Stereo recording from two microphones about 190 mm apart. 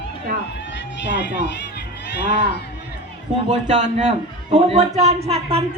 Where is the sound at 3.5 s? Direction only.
40° right (ahead or behind).